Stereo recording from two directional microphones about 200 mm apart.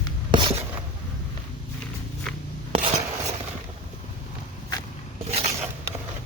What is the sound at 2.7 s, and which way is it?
Filing, 30° right (ahead or behind).